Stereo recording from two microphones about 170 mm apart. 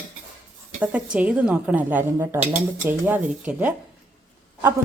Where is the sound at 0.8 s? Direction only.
10° right (ahead or behind).